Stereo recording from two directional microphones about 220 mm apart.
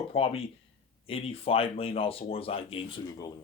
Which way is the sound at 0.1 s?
25° left (ahead or behind).